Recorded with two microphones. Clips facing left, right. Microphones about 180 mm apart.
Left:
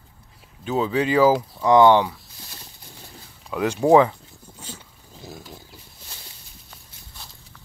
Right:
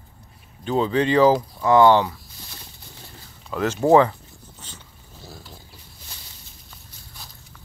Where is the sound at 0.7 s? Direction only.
5° left (ahead or behind).